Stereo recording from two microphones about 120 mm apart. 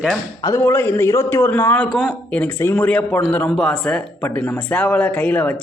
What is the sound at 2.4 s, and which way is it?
Speech, 15° left (ahead or behind).